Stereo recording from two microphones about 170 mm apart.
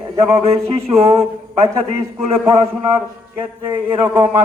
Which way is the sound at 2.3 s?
10° right (ahead or behind).